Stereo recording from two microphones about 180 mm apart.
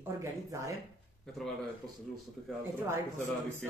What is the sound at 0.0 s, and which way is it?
Speech, 15° right (ahead or behind).